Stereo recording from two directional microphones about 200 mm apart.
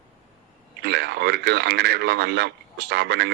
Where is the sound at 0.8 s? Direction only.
55° right (ahead or behind).